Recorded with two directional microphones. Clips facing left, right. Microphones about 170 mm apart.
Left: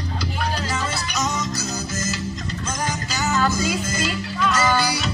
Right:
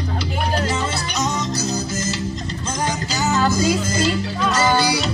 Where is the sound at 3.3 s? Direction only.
35° right (ahead or behind).